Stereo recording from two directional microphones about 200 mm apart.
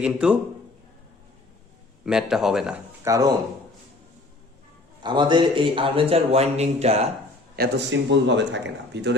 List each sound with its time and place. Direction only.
0.0 s a man's voice: 5° right (ahead or behind)
2.0 s a man's voice: 5° right (ahead or behind)
3.0 s speech: 15° right (ahead or behind)
5.0 s speech: 25° right (ahead or behind)
7.6 s speech: 50° right (ahead or behind)
8.1 s a man's voice: 60° right (ahead or behind)